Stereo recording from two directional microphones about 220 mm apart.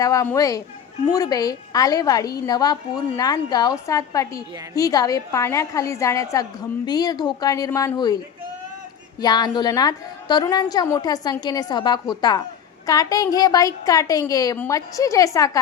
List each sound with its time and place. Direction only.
0.0 s a woman's voice: 15° left (ahead or behind)
9.2 s a woman's voice: 20° left (ahead or behind)